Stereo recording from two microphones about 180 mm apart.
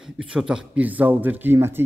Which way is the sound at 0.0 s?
5° right (ahead or behind).